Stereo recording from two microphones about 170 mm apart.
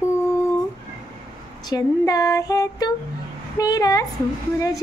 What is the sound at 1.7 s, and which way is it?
Speech, 20° left (ahead or behind).